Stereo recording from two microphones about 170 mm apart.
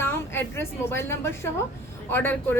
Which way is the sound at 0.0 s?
15° left (ahead or behind).